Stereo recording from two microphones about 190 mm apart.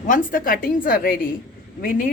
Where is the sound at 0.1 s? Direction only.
45° left (ahead or behind).